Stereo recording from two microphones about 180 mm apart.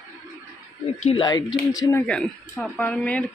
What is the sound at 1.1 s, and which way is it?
Speech, 25° left (ahead or behind).